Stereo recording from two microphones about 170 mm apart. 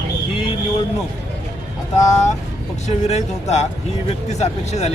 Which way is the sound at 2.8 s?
40° left (ahead or behind).